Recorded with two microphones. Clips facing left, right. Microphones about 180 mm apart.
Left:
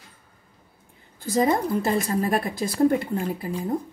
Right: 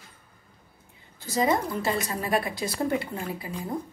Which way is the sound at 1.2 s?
50° left (ahead or behind).